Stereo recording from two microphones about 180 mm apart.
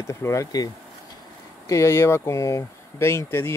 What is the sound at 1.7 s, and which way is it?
Speech, 15° left (ahead or behind).